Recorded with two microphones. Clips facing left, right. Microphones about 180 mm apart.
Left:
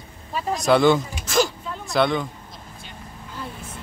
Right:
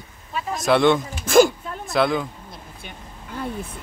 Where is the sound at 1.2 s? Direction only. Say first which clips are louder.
Right 8 dB; 55° right (ahead or behind).